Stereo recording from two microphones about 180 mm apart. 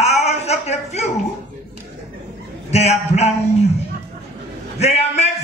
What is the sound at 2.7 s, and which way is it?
Speech, 40° left (ahead or behind).